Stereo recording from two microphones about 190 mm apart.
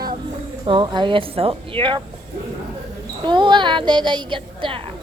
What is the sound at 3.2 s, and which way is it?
A woman's voice, 25° right (ahead or behind).